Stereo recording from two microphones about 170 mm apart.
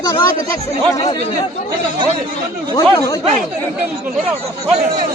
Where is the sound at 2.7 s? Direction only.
20° left (ahead or behind).